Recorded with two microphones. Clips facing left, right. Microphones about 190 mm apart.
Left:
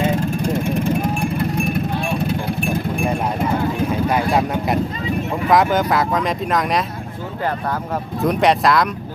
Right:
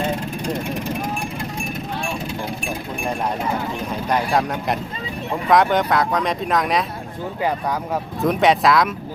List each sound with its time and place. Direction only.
1.4 s vehicle: 55° left (ahead or behind)
4.1 s speech: 5° left (ahead or behind)
8.2 s speech: centre (ahead or behind)